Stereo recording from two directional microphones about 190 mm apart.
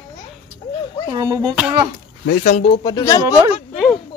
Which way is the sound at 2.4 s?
35° left (ahead or behind).